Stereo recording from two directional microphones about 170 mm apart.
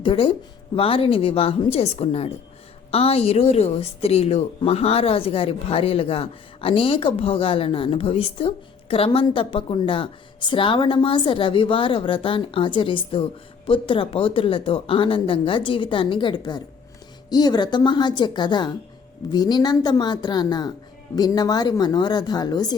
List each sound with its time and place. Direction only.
0.0 s a woman's voice: 30° left (ahead or behind)